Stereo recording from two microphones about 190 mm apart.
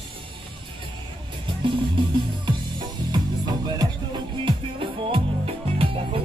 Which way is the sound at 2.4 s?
25° right (ahead or behind).